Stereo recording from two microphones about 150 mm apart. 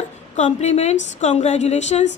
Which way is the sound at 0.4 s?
50° left (ahead or behind).